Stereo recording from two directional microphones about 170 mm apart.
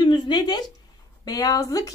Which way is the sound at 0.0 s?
25° left (ahead or behind).